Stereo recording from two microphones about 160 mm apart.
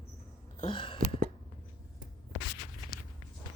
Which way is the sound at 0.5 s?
35° left (ahead or behind).